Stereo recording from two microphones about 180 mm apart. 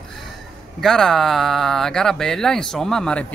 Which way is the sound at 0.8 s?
Centre (ahead or behind).